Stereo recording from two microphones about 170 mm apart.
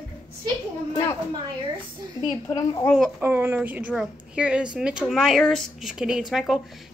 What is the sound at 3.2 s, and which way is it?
A woman's voice, 15° right (ahead or behind).